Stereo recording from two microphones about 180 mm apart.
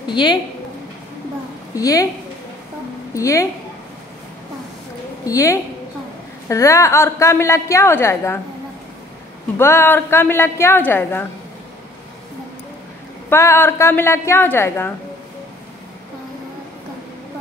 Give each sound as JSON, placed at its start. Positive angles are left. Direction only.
{"t": 0.1, "sound": "a woman's voice", "side_deg": 25}
{"t": 1.8, "sound": "a woman's voice", "side_deg": 20}
{"t": 3.2, "sound": "a woman's voice", "side_deg": 15}
{"t": 5.2, "sound": "a woman's voice", "side_deg": 20}
{"t": 9.6, "sound": "a woman's voice", "side_deg": 15}
{"t": 13.3, "sound": "a woman's voice", "side_deg": 15}